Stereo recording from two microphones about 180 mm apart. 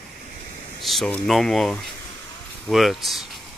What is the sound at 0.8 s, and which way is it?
Speech, centre (ahead or behind).